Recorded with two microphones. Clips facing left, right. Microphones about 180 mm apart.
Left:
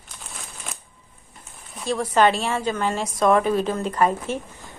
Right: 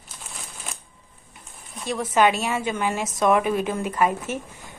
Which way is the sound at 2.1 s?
10° right (ahead or behind).